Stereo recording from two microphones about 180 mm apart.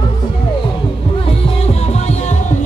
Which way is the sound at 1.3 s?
35° left (ahead or behind).